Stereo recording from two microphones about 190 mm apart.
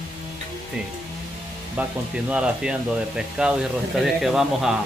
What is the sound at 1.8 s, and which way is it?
Speech, 5° right (ahead or behind).